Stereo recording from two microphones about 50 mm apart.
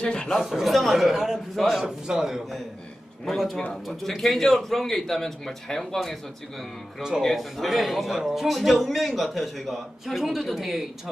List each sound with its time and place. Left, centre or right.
0.0 s speech: centre
0.4 s a man's voice: centre
3.3 s a man's voice: centre
7.2 s a man's voice: centre